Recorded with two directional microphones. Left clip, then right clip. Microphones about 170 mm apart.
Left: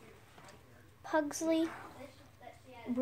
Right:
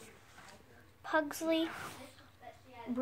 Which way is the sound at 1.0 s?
Centre (ahead or behind).